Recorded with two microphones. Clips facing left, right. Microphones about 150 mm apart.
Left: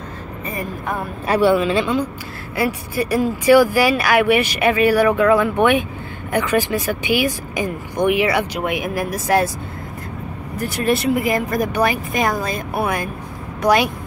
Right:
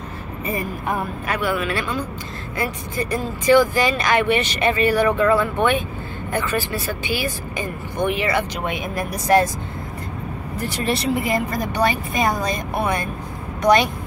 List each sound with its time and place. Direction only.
1.2 s speech: 30° left (ahead or behind)
2.5 s speech: 10° left (ahead or behind)
10.6 s speech: centre (ahead or behind)